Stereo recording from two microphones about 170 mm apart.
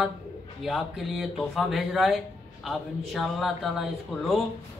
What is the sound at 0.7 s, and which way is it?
Speech, centre (ahead or behind).